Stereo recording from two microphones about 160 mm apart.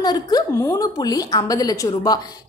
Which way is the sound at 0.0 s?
25° left (ahead or behind).